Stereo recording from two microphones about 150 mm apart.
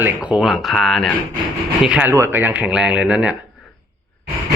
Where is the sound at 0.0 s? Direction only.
10° right (ahead or behind).